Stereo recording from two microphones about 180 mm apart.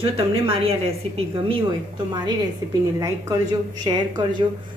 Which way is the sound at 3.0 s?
20° right (ahead or behind).